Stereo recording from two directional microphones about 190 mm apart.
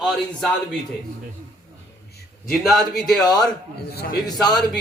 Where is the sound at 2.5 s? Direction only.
Centre (ahead or behind).